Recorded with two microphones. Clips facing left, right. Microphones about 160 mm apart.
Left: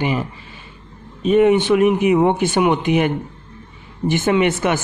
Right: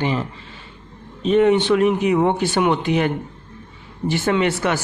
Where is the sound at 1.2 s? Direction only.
10° left (ahead or behind).